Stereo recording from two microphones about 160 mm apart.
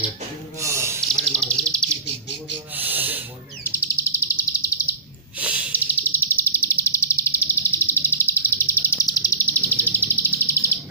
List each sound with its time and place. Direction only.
0.6 s a sound: 20° right (ahead or behind)
1.3 s bird: 5° left (ahead or behind)
2.7 s owl: 10° right (ahead or behind)
3.6 s bird: 15° left (ahead or behind)
5.4 s snort: 10° right (ahead or behind)
6.0 s a sound: 15° left (ahead or behind)